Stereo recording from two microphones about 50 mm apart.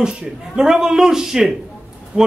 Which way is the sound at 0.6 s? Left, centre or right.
Centre.